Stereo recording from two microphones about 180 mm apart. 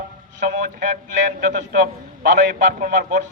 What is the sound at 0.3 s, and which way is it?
Speech, 45° right (ahead or behind).